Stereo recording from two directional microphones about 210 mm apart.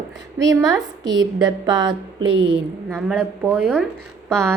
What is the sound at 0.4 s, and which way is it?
A woman's voice, 20° right (ahead or behind).